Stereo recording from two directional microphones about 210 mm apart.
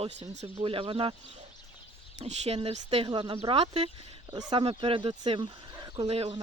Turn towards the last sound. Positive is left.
turn(degrees=-25)  # may be behind; listen again after turning